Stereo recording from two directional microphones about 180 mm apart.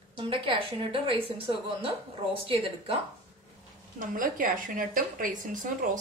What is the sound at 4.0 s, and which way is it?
A woman's voice, 50° right (ahead or behind).